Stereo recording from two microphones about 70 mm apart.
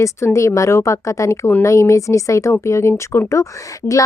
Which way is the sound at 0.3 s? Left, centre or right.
Left.